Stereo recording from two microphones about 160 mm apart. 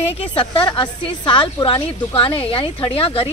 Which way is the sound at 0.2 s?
35° left (ahead or behind).